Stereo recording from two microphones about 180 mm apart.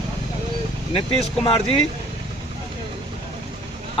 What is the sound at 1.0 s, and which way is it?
Speech, 30° left (ahead or behind).